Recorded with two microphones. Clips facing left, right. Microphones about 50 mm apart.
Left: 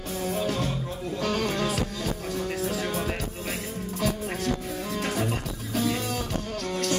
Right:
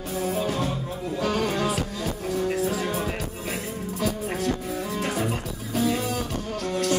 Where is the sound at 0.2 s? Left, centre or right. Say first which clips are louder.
Right 2 dB; centre.